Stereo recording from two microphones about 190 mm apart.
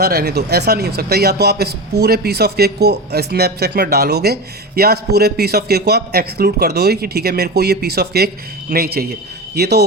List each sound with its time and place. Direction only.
0.0 s a man's voice: 55° right (ahead or behind)